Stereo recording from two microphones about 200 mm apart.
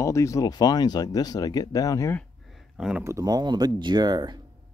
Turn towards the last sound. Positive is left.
turn(degrees=-20)  # may be behind; listen again after turning